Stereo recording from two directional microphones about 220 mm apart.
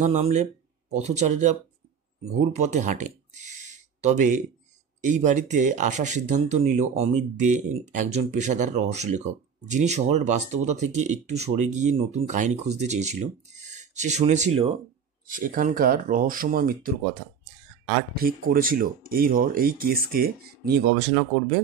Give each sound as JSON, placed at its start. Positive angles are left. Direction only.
{"t": 0.0, "sound": "a sound", "side_deg": -30}
{"t": 1.0, "sound": "speech", "side_deg": -30}
{"t": 18.1, "sound": "speech", "side_deg": -40}